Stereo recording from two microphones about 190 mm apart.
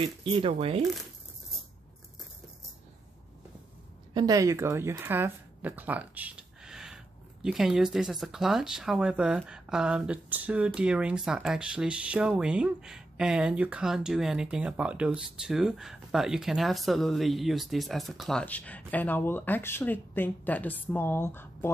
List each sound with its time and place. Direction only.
0.0 s speech: 30° right (ahead or behind)
4.1 s speech: 20° right (ahead or behind); by 21.7 s 10° left (ahead or behind)